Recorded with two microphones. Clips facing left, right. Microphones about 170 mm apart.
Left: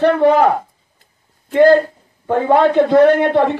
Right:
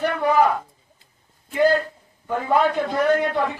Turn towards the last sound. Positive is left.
turn(degrees=70)  # may be behind; listen again after turning